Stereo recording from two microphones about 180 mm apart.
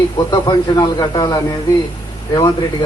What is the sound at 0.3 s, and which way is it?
A man's voice, 25° left (ahead or behind).